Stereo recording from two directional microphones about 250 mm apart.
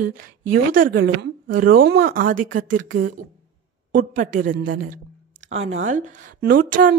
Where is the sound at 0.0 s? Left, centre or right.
Right.